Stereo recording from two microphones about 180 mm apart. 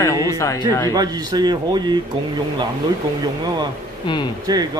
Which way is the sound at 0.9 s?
20° right (ahead or behind).